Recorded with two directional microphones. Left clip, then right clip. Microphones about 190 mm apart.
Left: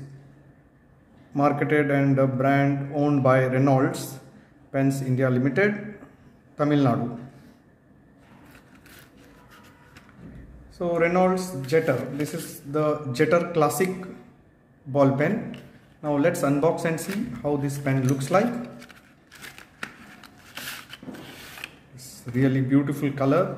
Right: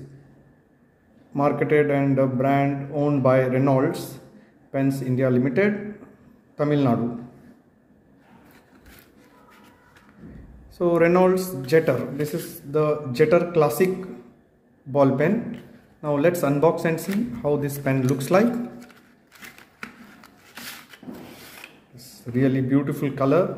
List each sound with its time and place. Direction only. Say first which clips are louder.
1.3 s a man's voice: right 2 dB; 10° right (ahead or behind)
10.8 s a man's voice: right 4 dB; 25° right (ahead or behind)
21.9 s a man's voice: right 3 dB; 15° right (ahead or behind)